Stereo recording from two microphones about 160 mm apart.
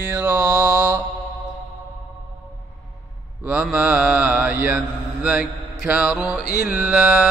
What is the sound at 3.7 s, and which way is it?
Mantra, 10° right (ahead or behind).